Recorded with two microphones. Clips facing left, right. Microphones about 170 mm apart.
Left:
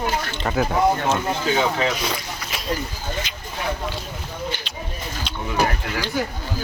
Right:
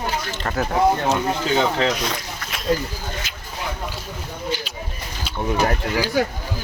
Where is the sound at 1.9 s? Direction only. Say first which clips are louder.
Even; centre (ahead or behind).